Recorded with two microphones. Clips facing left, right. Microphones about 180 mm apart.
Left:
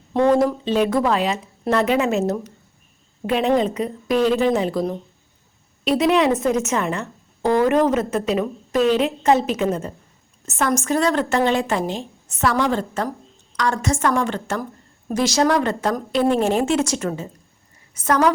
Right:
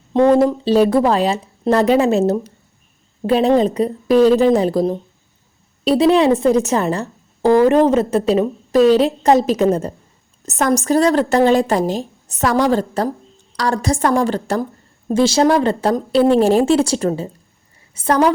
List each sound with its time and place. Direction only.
0.1 s a woman's voice: 20° right (ahead or behind)